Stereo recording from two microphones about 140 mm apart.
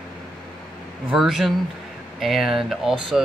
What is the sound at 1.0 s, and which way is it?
Speech, centre (ahead or behind).